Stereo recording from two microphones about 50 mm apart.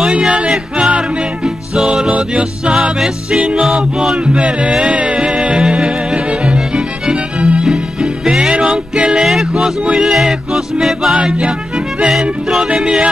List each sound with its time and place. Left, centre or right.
0.3 s music: right
4.3 s music: right
12.8 s yodeling: right